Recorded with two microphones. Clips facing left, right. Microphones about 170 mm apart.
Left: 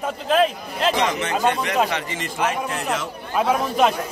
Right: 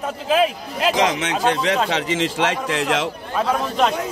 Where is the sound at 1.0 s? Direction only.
90° right.